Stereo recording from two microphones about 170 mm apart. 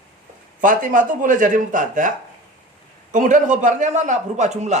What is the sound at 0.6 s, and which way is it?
A man's voice, 50° right (ahead or behind).